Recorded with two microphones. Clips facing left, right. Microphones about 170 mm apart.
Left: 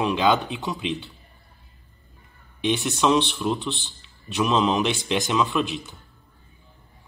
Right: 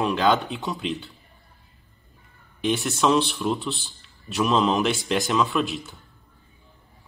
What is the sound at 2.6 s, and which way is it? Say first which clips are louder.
A man's voice: even; centre (ahead or behind).